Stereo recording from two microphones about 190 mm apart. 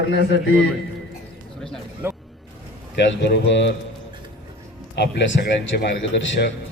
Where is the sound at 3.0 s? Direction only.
65° left (ahead or behind).